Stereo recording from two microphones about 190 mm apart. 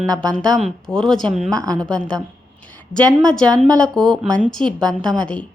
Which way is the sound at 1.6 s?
20° right (ahead or behind).